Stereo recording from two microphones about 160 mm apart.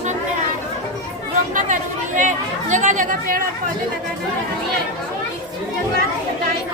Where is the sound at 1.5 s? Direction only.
50° right (ahead or behind).